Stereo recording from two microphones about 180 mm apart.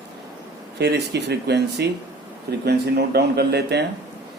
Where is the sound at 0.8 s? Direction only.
65° right (ahead or behind).